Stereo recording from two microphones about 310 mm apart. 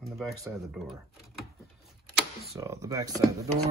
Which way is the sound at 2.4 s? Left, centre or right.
Centre.